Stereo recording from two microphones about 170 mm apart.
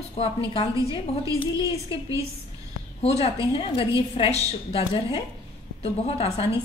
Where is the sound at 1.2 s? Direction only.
20° right (ahead or behind).